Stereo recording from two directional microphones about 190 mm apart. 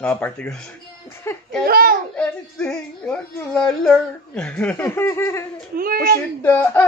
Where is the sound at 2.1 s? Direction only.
5° left (ahead or behind).